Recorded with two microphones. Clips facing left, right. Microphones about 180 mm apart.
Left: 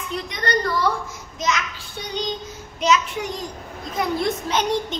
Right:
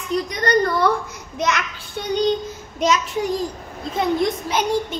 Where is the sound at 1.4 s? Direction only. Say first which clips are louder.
Right 2 dB; 65° right (ahead or behind).